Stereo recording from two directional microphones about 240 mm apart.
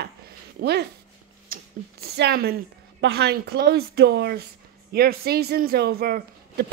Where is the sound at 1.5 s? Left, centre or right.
Right.